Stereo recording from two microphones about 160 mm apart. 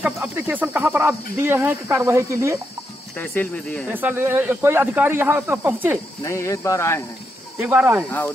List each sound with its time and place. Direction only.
0.0 s speech: 10° right (ahead or behind)
3.2 s speech: 10° left (ahead or behind)
3.9 s speech: 10° right (ahead or behind)
6.2 s speech: 20° left (ahead or behind)
7.5 s speech: 10° right (ahead or behind)